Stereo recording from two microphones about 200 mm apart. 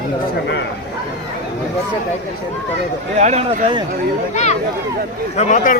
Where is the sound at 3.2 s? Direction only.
35° right (ahead or behind).